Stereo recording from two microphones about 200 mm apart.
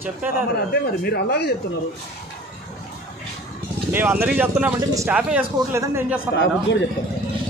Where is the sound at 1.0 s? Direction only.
55° left (ahead or behind).